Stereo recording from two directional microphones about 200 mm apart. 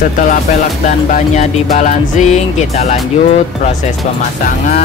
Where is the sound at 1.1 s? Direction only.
35° left (ahead or behind).